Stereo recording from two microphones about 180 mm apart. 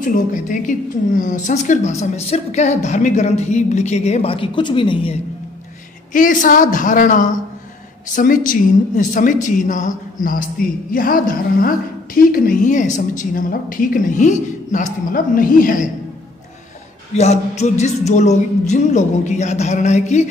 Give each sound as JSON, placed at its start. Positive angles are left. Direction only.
{"t": 0.0, "sound": "a woman's voice", "side_deg": 45}
{"t": 6.1, "sound": "a woman's voice", "side_deg": 45}
{"t": 17.1, "sound": "a woman's voice", "side_deg": 40}